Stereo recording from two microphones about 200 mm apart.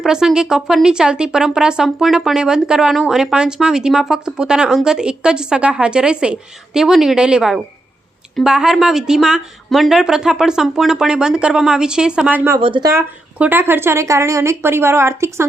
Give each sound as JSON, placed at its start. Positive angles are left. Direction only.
{"t": 0.0, "sound": "speech", "side_deg": 0}
{"t": 12.5, "sound": "speech", "side_deg": -25}
{"t": 12.9, "sound": "speech", "side_deg": -10}